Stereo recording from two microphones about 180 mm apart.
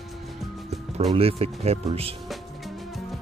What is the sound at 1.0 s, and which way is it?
Speech, 30° right (ahead or behind).